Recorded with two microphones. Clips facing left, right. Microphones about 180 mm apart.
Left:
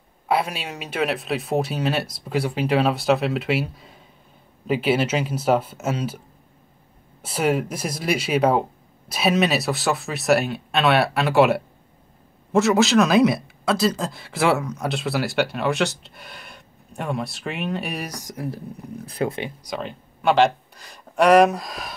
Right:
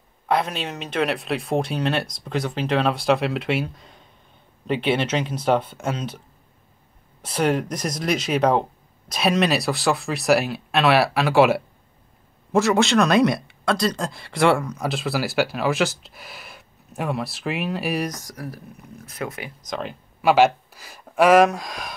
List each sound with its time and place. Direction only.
0.3 s speech: 10° left (ahead or behind)
18.1 s speech: 20° left (ahead or behind)
19.7 s speech: centre (ahead or behind)